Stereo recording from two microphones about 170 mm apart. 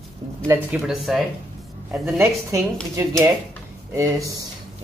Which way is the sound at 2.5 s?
20° right (ahead or behind).